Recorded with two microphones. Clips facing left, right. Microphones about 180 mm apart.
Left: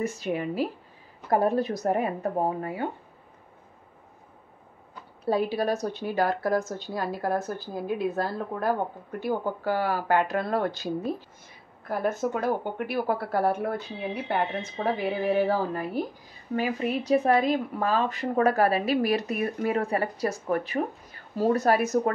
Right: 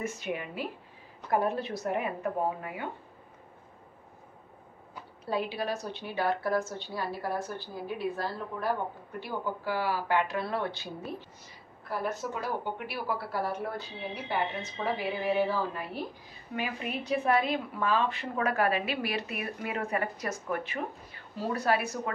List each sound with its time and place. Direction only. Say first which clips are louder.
0.0 s speech: left 6 dB; 35° left (ahead or behind)
5.3 s a woman's voice: left 6 dB; 40° left (ahead or behind)
11.9 s a woman's voice: left 6 dB; 50° left (ahead or behind)